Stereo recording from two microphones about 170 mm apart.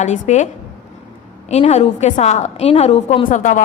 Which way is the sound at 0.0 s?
45° left (ahead or behind).